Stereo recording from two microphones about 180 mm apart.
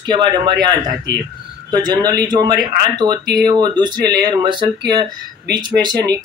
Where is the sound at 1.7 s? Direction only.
25° right (ahead or behind).